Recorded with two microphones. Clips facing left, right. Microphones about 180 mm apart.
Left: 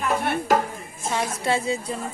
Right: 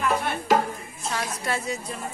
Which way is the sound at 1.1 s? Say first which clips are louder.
Left 5 dB; 25° left (ahead or behind).